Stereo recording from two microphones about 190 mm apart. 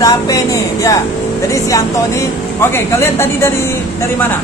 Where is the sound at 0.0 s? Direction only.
20° left (ahead or behind).